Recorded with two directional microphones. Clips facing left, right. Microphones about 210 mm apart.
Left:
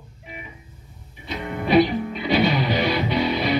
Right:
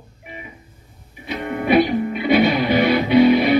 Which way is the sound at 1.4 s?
55° right (ahead or behind).